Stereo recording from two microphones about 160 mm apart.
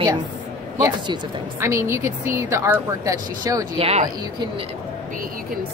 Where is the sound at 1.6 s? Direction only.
20° right (ahead or behind).